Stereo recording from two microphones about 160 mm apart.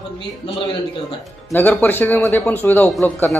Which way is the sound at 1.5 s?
15° left (ahead or behind).